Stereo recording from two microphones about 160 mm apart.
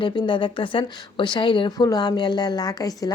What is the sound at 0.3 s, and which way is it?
Speech, 30° left (ahead or behind).